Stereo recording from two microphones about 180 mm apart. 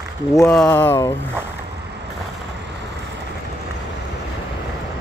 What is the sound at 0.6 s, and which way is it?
Speech, 10° left (ahead or behind).